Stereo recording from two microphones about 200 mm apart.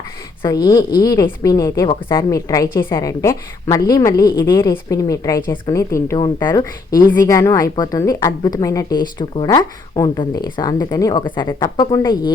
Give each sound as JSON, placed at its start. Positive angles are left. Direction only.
{"t": 0.4, "sound": "a woman's voice", "side_deg": 20}